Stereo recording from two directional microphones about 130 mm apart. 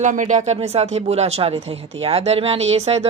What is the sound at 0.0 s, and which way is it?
Speech, 75° right (ahead or behind).